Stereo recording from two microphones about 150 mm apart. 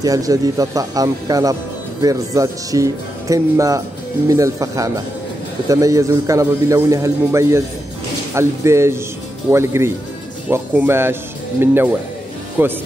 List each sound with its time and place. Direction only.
0.0 s speech: 25° right (ahead or behind)